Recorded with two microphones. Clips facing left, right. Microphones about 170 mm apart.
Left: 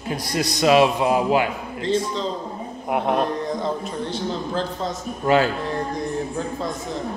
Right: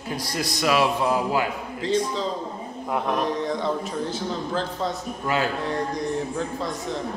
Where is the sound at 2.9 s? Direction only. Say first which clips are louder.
Left 4 dB; 25° left (ahead or behind).